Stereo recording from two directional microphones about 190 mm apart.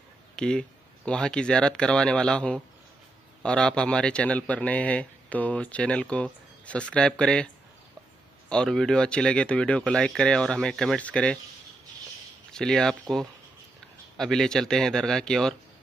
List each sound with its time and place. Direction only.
0.4 s a man's voice: 5° left (ahead or behind)
8.5 s a man's voice: 5° left (ahead or behind)
12.5 s a man's voice: 5° left (ahead or behind)
14.1 s a man's voice: centre (ahead or behind)